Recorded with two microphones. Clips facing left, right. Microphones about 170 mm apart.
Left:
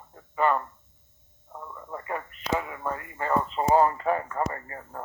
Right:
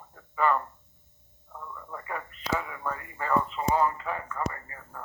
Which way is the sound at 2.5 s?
20° left (ahead or behind).